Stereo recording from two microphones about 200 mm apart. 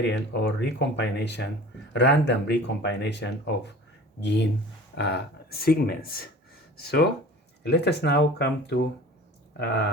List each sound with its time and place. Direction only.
0.1 s speech: 60° left (ahead or behind)